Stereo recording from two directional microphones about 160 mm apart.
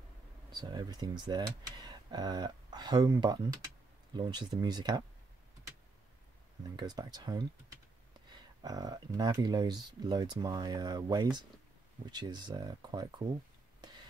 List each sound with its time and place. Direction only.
0.5 s speech: 25° right (ahead or behind)
6.8 s speech: 25° right (ahead or behind)